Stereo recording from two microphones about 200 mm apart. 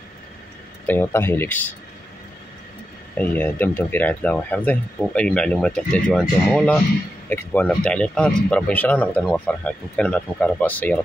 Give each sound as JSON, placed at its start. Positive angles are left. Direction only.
{"t": 0.8, "sound": "speech", "side_deg": 10}
{"t": 3.2, "sound": "speech", "side_deg": 10}